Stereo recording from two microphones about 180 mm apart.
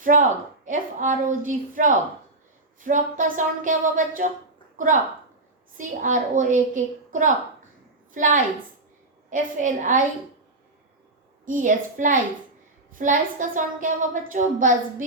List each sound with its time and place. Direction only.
0.0 s a woman's voice: 45° right (ahead or behind)
5.7 s a woman's voice: 45° right (ahead or behind)
11.4 s a woman's voice: 45° right (ahead or behind)